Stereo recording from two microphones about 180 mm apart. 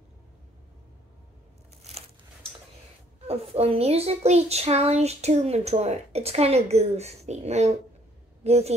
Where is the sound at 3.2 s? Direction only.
35° right (ahead or behind).